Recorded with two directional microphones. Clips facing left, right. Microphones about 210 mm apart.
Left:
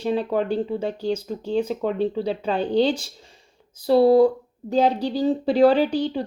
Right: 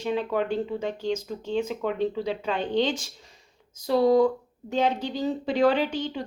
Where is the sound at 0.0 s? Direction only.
35° left (ahead or behind).